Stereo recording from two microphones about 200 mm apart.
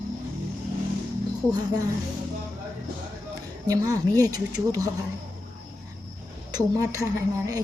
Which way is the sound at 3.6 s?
15° right (ahead or behind).